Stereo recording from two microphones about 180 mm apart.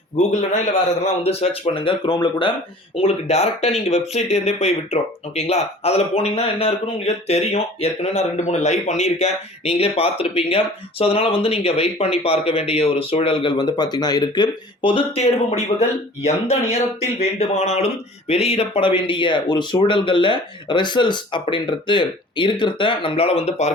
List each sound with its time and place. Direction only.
0.2 s speech: 40° left (ahead or behind); by 2.5 s 25° left (ahead or behind)
3.0 s speech: 35° left (ahead or behind)